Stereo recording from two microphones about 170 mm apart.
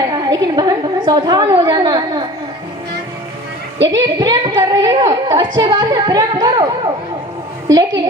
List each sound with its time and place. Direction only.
0.3 s a woman's voice: 20° right (ahead or behind)
3.8 s a woman's voice: 20° right (ahead or behind)